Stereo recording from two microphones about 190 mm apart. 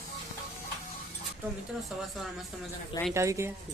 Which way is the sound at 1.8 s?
Centre (ahead or behind).